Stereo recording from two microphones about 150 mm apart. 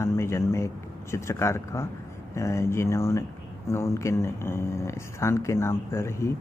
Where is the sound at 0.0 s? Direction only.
15° left (ahead or behind).